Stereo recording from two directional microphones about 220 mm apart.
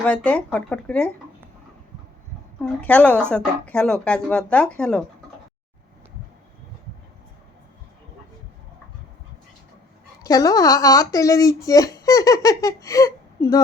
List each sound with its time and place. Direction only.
0.0 s speech: 5° left (ahead or behind)
2.6 s speech: 5° left (ahead or behind)
10.2 s speech: 15° left (ahead or behind)